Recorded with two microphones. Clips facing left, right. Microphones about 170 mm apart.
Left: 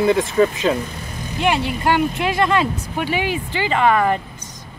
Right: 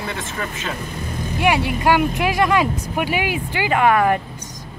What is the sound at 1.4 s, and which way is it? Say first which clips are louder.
Speech: right 1 dB; 10° right (ahead or behind).